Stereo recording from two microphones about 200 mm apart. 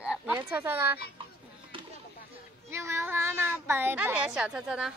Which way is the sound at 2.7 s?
15° right (ahead or behind).